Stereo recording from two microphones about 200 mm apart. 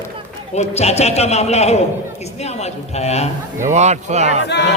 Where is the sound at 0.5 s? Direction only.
35° left (ahead or behind).